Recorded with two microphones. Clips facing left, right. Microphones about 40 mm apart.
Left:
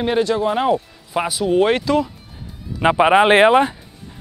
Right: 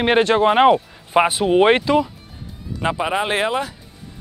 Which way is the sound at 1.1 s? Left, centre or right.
Right.